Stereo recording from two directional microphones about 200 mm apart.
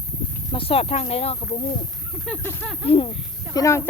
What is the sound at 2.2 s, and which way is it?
Speech, 5° left (ahead or behind).